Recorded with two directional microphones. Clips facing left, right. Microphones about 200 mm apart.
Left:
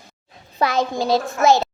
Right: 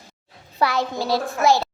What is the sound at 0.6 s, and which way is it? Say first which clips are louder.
A child's voice: left 2 dB; 20° left (ahead or behind).